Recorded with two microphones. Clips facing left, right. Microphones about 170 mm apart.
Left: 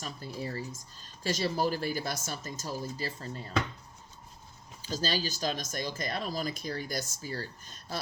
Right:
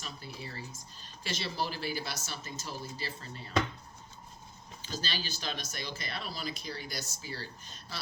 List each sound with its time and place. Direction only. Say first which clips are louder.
0.0 s speech: left 6 dB; 45° left (ahead or behind)
4.8 s speech: left 7 dB; 40° left (ahead or behind)